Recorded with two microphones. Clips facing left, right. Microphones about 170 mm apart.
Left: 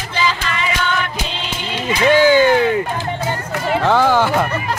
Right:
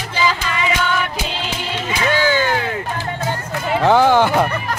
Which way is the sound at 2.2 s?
15° left (ahead or behind).